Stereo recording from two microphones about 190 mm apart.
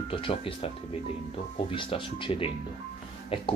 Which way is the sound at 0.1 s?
30° left (ahead or behind).